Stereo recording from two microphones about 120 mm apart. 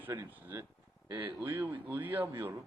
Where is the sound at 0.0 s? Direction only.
20° right (ahead or behind).